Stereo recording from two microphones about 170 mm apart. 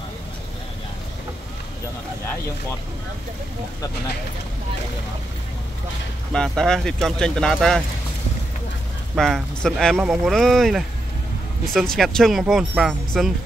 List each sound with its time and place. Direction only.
6.3 s speech: 5° left (ahead or behind)
9.1 s speech: centre (ahead or behind)